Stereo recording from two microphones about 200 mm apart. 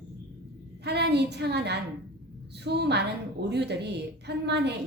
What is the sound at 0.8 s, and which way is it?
A woman's voice, 55° right (ahead or behind).